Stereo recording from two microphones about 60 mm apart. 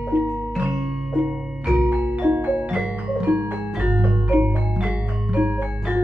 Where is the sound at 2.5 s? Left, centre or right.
Centre.